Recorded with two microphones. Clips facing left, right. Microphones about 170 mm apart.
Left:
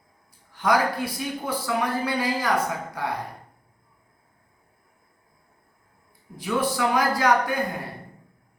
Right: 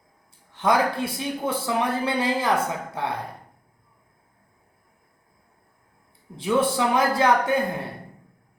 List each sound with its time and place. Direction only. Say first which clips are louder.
0.5 s speech: right 1 dB; 25° right (ahead or behind)
6.3 s speech: right 4 dB; 25° right (ahead or behind)